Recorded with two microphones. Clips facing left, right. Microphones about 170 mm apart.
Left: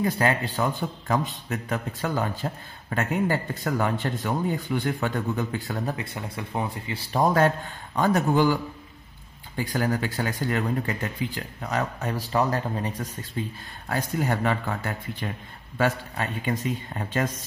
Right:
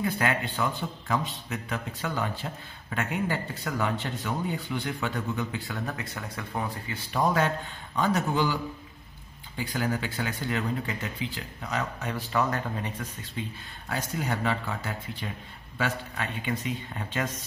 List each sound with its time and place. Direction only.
0.0 s a man's voice: 35° left (ahead or behind)
5.9 s speech: 25° left (ahead or behind)
7.1 s a man's voice: 40° left (ahead or behind)
9.6 s a man's voice: 45° left (ahead or behind)
15.8 s speech: 40° left (ahead or behind)